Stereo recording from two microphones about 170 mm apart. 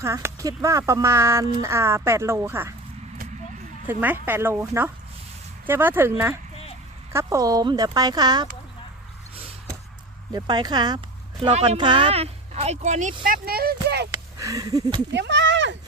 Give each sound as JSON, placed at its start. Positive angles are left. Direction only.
{"t": 0.0, "sound": "speech", "side_deg": -15}
{"t": 3.8, "sound": "speech", "side_deg": -10}
{"t": 10.3, "sound": "speech", "side_deg": -25}
{"t": 11.5, "sound": "speech", "side_deg": -40}
{"t": 11.8, "sound": "speech", "side_deg": -30}
{"t": 13.2, "sound": "speech", "side_deg": -60}
{"t": 14.1, "sound": "a sound", "side_deg": -20}
{"t": 15.1, "sound": "speech", "side_deg": -90}